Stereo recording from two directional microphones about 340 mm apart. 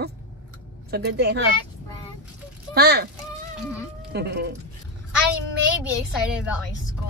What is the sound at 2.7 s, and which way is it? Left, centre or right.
Speech, right.